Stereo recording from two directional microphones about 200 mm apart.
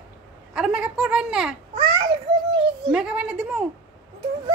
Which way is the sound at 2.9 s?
5° right (ahead or behind).